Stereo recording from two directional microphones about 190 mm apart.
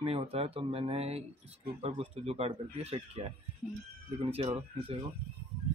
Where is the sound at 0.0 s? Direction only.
30° right (ahead or behind).